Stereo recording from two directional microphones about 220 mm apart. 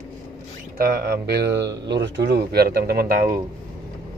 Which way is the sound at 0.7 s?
45° right (ahead or behind).